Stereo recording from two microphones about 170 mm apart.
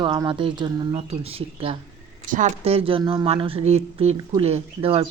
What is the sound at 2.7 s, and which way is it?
Speech, 35° right (ahead or behind).